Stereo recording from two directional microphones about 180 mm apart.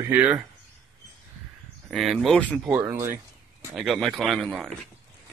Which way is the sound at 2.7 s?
15° right (ahead or behind).